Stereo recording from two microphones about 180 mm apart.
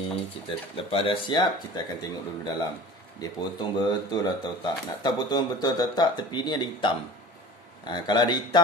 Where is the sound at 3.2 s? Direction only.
20° left (ahead or behind).